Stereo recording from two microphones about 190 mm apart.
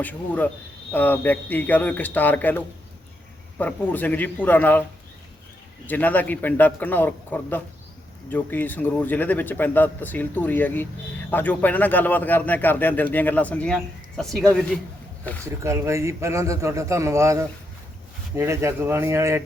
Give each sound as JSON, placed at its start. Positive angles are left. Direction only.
{"t": 0.0, "sound": "a man's voice", "side_deg": 10}
{"t": 5.8, "sound": "a man's voice", "side_deg": 10}
{"t": 15.4, "sound": "a man's voice", "side_deg": -15}